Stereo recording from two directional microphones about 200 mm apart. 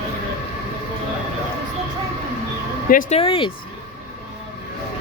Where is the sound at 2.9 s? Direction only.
45° left (ahead or behind).